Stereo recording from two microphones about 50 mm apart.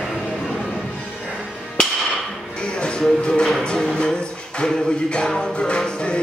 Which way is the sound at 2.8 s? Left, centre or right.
Centre.